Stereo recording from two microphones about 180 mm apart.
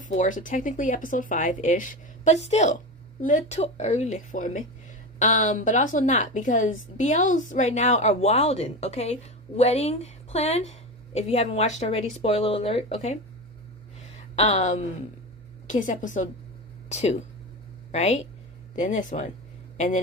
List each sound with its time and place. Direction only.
0.0 s a woman's voice: 45° left (ahead or behind)